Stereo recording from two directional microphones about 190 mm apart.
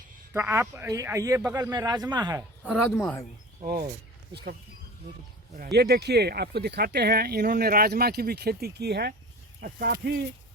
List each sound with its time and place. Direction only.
0.3 s speech: 15° right (ahead or behind)
2.6 s speech: centre (ahead or behind)
5.7 s speech: 60° right (ahead or behind)
9.6 s speech: 45° right (ahead or behind)